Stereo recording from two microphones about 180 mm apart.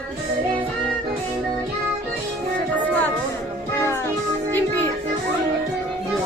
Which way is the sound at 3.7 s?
15° left (ahead or behind).